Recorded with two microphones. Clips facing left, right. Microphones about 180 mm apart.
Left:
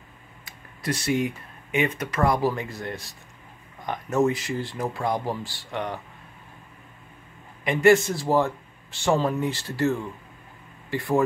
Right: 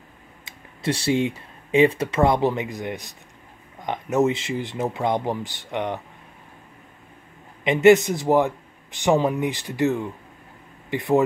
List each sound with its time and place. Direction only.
0.5 s speech: 30° right (ahead or behind)
7.6 s speech: 20° right (ahead or behind)